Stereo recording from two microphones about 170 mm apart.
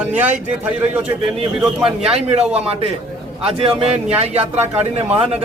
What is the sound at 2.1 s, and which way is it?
Speech, 40° right (ahead or behind).